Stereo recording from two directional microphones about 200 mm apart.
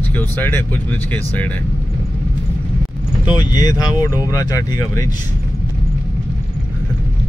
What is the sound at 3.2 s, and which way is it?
Speech, 20° left (ahead or behind).